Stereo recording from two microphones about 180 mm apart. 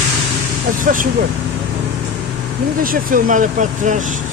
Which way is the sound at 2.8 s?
50° right (ahead or behind).